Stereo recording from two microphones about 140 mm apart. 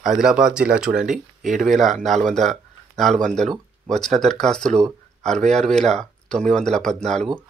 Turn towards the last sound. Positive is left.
turn(degrees=5)  # may be behind; listen again after turning